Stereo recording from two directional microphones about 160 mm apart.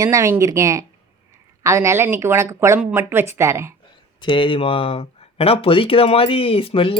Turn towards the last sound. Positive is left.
turn(degrees=35)  # may be behind; listen again after turning